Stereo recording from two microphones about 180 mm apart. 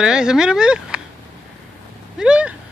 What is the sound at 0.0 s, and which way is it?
A man's voice, 5° right (ahead or behind).